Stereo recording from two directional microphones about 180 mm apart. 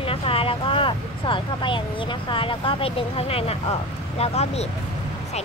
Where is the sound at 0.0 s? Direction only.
30° left (ahead or behind).